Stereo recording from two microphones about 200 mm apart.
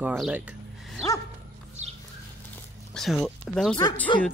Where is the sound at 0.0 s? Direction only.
5° right (ahead or behind).